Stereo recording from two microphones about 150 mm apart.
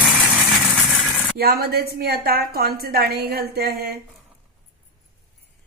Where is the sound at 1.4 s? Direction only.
90° right.